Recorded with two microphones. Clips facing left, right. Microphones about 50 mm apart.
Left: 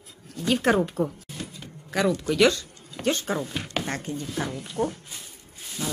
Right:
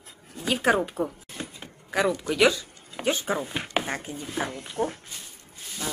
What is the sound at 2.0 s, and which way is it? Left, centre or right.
A woman's voice, centre.